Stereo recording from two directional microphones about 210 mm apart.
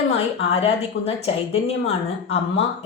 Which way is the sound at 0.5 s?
30° left (ahead or behind).